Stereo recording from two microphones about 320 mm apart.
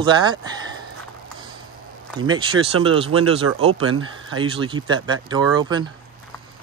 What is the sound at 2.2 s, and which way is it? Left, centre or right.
Speech, centre.